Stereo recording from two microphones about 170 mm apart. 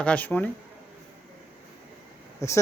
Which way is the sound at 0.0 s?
10° left (ahead or behind).